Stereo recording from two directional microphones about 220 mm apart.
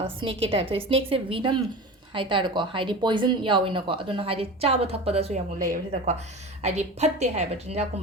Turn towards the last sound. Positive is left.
turn(degrees=-30)  # may be behind; listen again after turning